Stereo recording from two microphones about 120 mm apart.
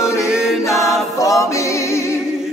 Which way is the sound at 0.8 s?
Centre (ahead or behind).